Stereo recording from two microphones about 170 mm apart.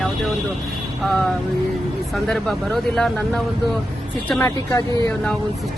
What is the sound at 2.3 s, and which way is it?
Speech, centre (ahead or behind).